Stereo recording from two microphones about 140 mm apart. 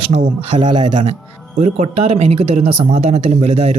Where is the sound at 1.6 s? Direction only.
55° right (ahead or behind).